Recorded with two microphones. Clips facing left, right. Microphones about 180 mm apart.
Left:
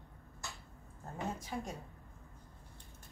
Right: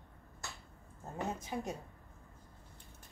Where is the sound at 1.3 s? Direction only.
20° right (ahead or behind).